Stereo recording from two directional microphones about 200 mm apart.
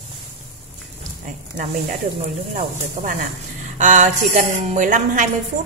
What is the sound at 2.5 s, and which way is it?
A woman's voice, 40° right (ahead or behind).